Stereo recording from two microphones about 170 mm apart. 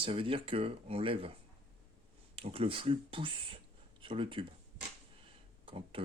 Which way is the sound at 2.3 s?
35° right (ahead or behind).